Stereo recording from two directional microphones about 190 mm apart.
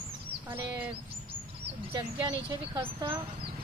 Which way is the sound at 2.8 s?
20° right (ahead or behind).